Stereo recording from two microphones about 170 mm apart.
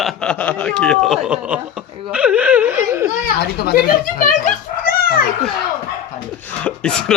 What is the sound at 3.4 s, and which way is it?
Speech, 70° left (ahead or behind).